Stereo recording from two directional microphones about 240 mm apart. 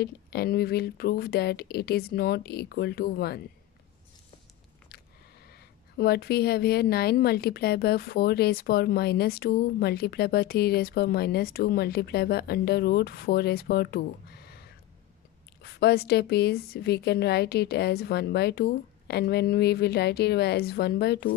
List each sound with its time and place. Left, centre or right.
0.0 s a woman's voice: left
5.5 s a woman's voice: left
15.6 s a woman's voice: left